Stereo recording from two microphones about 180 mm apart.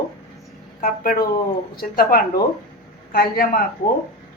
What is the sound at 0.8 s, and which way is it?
Speech, 50° left (ahead or behind).